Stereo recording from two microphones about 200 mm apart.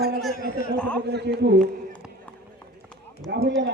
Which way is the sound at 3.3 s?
60° right (ahead or behind).